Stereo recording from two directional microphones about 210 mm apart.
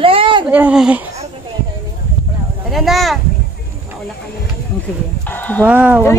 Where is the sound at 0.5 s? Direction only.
5° right (ahead or behind).